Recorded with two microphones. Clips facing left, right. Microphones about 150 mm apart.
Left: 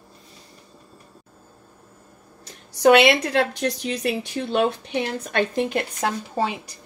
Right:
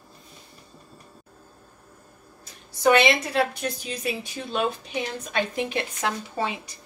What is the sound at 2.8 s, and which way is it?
A woman's voice, 75° left (ahead or behind).